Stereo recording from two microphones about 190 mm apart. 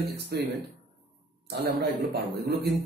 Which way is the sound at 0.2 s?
60° right (ahead or behind).